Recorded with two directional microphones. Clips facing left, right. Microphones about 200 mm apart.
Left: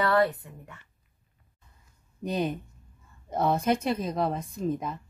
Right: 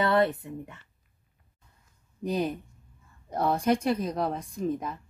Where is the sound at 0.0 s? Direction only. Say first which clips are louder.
Even; 20° right (ahead or behind).